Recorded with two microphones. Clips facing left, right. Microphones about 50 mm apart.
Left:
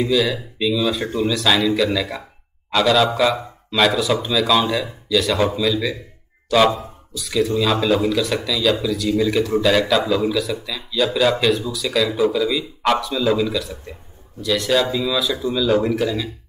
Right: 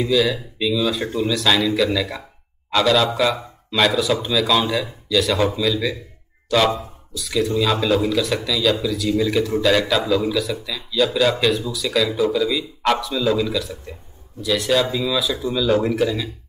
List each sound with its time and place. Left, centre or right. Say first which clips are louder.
0.0 s a man's voice: even; centre
2.7 s a man's voice: left 1 dB; centre